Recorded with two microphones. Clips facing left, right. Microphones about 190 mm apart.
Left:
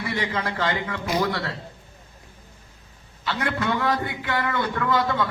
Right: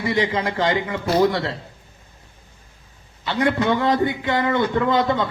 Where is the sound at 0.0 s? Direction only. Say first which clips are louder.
Right 6 dB; 20° right (ahead or behind).